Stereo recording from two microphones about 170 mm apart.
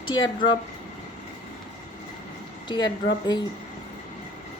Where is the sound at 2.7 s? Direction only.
25° left (ahead or behind).